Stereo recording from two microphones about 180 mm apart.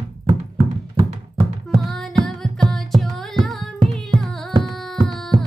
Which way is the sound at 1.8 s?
Centre (ahead or behind).